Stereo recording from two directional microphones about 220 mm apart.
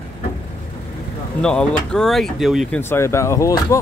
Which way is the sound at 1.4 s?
5° left (ahead or behind).